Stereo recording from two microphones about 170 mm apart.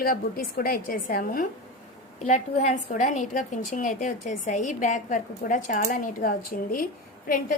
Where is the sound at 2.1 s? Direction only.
45° left (ahead or behind).